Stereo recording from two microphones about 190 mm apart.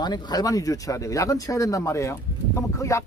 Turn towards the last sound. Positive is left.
turn(degrees=15)  # may be behind; listen again after turning